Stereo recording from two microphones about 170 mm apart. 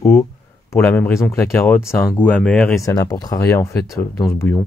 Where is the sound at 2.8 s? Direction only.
20° left (ahead or behind).